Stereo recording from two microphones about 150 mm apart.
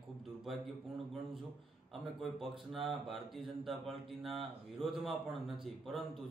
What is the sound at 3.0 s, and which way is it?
Speech, centre (ahead or behind).